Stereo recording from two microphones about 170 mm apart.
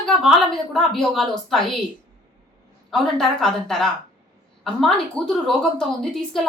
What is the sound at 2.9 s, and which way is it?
A woman's voice, centre (ahead or behind).